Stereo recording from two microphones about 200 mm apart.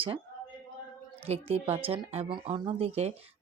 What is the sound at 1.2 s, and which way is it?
Speech, 30° right (ahead or behind).